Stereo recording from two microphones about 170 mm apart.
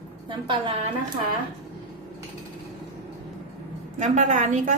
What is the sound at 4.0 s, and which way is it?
Speech, 45° right (ahead or behind).